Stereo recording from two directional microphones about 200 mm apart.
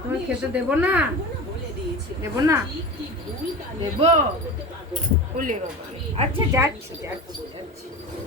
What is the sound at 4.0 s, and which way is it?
Speech, 35° right (ahead or behind).